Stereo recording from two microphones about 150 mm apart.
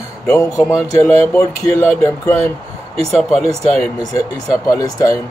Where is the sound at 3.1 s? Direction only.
Centre (ahead or behind).